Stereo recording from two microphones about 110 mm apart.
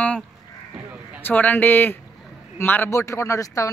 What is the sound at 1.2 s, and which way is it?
A man's voice, 15° left (ahead or behind).